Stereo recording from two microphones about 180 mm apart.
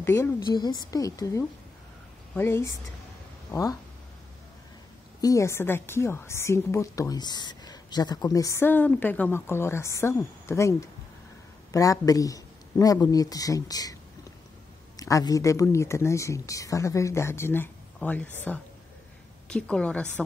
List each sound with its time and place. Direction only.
0.0 s a woman's voice: 20° left (ahead or behind)
5.2 s a woman's voice: 15° left (ahead or behind)
15.0 s a woman's voice: 20° left (ahead or behind)